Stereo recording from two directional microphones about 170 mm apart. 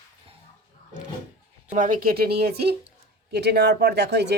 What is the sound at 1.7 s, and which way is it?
Speech, 50° right (ahead or behind).